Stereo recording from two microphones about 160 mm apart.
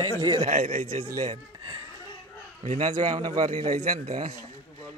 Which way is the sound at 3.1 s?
30° right (ahead or behind).